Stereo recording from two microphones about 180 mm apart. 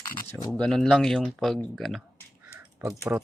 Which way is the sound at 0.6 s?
5° left (ahead or behind).